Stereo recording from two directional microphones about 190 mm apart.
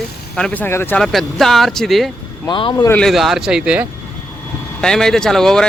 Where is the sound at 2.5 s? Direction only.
25° left (ahead or behind).